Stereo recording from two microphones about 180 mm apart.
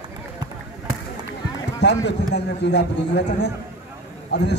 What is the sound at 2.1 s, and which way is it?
A man's voice, 70° left (ahead or behind).